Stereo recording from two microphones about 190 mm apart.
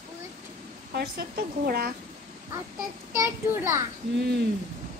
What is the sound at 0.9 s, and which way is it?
Speech, 55° right (ahead or behind).